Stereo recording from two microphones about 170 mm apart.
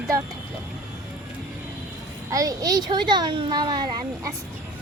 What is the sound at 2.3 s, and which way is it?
Speech, 20° right (ahead or behind).